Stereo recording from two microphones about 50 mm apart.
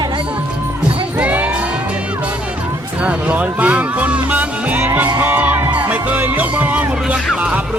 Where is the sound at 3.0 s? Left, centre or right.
Right.